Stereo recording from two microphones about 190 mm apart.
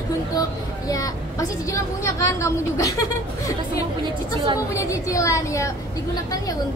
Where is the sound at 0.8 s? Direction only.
20° left (ahead or behind).